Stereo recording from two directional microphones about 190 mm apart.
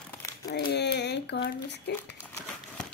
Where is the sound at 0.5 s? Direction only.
60° left (ahead or behind).